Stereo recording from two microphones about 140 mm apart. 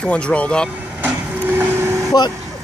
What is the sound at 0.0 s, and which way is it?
Speech, 10° left (ahead or behind).